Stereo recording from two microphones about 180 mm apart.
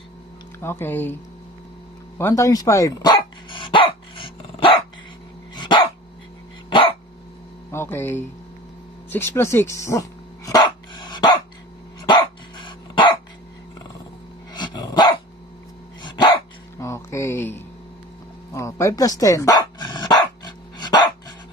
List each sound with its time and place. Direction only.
0.6 s speech: 10° left (ahead or behind)
2.1 s dog: 15° left (ahead or behind)
7.7 s a sound: 15° left (ahead or behind)
9.0 s dog: 10° left (ahead or behind)
14.5 s dog: 25° left (ahead or behind)
16.7 s music: 15° left (ahead or behind)
18.5 s dog: 15° left (ahead or behind)